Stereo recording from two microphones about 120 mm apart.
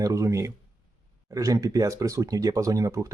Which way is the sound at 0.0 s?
25° right (ahead or behind).